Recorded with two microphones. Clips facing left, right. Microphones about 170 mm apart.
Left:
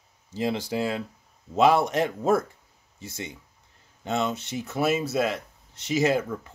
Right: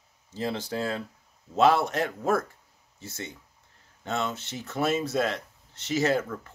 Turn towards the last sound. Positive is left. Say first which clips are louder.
# left 2 dB
turn(degrees=15)  # may be behind; listen again after turning